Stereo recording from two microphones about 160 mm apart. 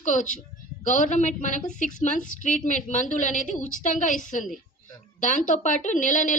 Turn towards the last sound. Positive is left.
turn(degrees=50)  # may be behind; listen again after turning